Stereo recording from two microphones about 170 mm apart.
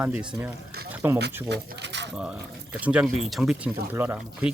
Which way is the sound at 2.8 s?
5° right (ahead or behind).